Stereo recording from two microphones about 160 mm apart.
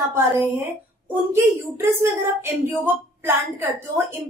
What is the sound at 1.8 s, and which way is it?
A woman's voice, 15° right (ahead or behind).